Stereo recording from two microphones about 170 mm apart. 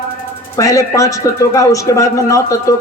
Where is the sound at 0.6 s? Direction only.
20° left (ahead or behind).